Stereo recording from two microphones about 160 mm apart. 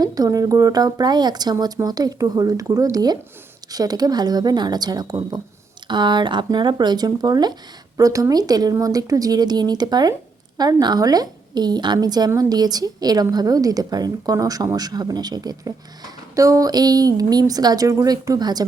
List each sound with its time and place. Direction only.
0.0 s a woman's voice: 25° right (ahead or behind)